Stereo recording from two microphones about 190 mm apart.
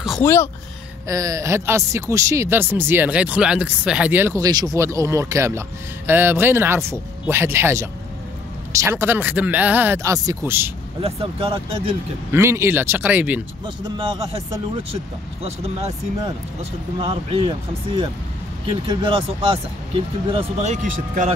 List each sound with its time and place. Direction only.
0.2 s speech: 15° left (ahead or behind)
1.0 s speech: 20° right (ahead or behind)
11.0 s speech: 30° right (ahead or behind)
12.3 s speech: 15° right (ahead or behind)
15.4 s speech: 35° right (ahead or behind)
17.0 s speech: 30° right (ahead or behind)